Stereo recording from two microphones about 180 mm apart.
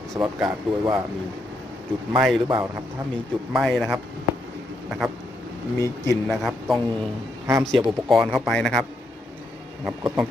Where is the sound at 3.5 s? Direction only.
Centre (ahead or behind).